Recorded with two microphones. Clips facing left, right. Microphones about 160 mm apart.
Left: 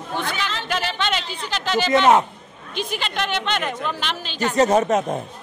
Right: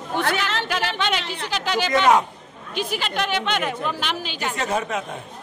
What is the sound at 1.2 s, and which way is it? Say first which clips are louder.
Speech: right 1 dB; 75° right (ahead or behind).